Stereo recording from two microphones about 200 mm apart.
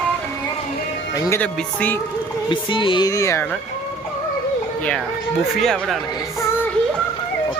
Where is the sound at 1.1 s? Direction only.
15° left (ahead or behind).